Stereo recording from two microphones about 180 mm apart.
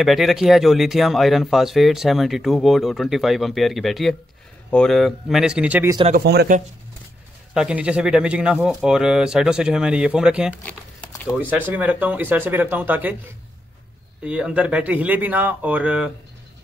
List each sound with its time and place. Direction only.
0.0 s speech: centre (ahead or behind)
6.1 s speech: 60° right (ahead or behind)
7.5 s speech: 5° right (ahead or behind)
14.2 s speech: 5° right (ahead or behind)